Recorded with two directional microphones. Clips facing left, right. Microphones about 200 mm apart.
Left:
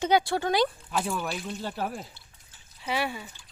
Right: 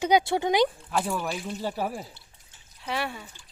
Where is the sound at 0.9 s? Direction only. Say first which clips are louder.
Right 2 dB; centre (ahead or behind).